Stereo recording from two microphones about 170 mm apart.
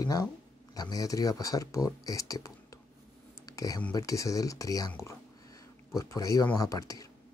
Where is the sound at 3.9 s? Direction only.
20° left (ahead or behind).